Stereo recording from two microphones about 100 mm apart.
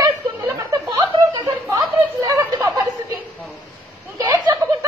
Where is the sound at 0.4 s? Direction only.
30° right (ahead or behind).